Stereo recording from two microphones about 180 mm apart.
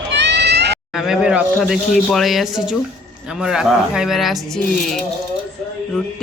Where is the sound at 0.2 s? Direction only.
70° right (ahead or behind).